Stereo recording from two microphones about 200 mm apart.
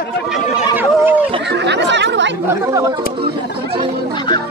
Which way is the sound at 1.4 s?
60° right (ahead or behind).